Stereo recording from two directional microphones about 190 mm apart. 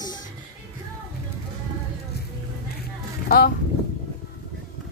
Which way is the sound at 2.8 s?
50° left (ahead or behind).